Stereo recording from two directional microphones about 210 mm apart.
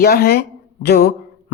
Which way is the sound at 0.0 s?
45° left (ahead or behind).